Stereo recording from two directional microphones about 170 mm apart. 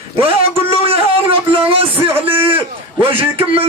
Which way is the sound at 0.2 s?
35° right (ahead or behind).